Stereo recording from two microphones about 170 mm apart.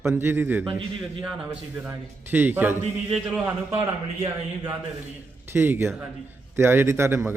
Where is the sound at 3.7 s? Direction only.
35° right (ahead or behind).